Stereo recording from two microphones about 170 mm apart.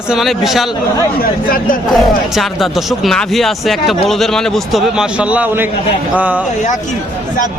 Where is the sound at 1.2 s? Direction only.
60° left (ahead or behind).